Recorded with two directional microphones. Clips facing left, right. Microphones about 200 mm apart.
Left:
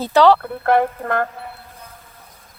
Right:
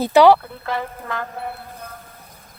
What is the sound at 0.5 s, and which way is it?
Speech, 55° left (ahead or behind).